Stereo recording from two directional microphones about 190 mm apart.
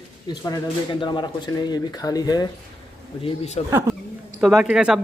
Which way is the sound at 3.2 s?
35° left (ahead or behind).